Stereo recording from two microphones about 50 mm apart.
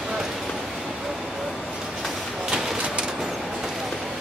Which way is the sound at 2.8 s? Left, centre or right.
Centre.